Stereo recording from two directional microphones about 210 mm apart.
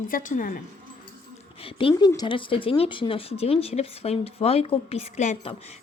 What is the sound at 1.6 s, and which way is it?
Speech, 25° left (ahead or behind).